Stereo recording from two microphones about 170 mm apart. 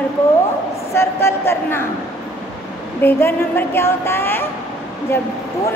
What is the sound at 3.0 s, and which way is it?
A woman's voice, 15° left (ahead or behind).